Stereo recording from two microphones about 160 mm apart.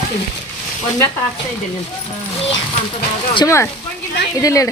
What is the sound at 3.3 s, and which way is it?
Speech, 20° left (ahead or behind).